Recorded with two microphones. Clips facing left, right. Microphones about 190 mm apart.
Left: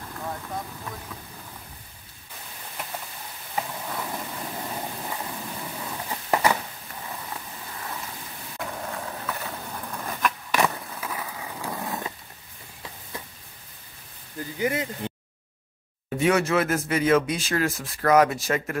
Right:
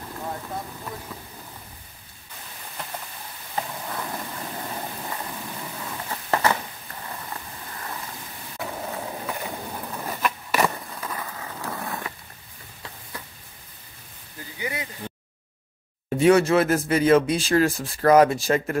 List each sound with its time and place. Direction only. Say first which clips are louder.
0.1 s vehicle: right 1 dB; 10° right (ahead or behind)
3.5 s vehicle: even; 5° left (ahead or behind)
6.0 s a sound: even; 10° left (ahead or behind)
8.5 s a sound: right 2 dB; 5° right (ahead or behind); by 12.1 s 15° left (ahead or behind)
14.6 s speech: left 6 dB; 50° left (ahead or behind)
16.2 s speech: right 5 dB; 30° right (ahead or behind)